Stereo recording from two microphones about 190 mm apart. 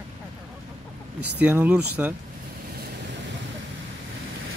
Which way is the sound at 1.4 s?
5° right (ahead or behind).